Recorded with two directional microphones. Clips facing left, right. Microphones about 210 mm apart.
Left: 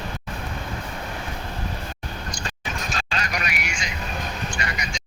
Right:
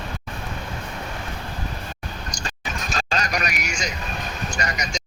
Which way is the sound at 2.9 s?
40° right (ahead or behind).